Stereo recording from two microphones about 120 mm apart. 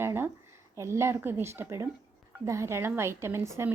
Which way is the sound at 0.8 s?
20° right (ahead or behind).